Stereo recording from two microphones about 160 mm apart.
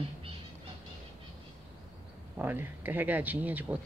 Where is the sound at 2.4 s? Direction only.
15° right (ahead or behind).